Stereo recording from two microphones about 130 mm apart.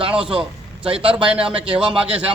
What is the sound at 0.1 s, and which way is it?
A man's voice, 5° right (ahead or behind).